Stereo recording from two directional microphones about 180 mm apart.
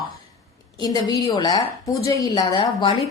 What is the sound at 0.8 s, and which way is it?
A woman's voice, 20° left (ahead or behind).